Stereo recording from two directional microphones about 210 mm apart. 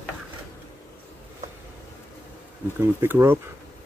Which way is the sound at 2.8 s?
10° right (ahead or behind).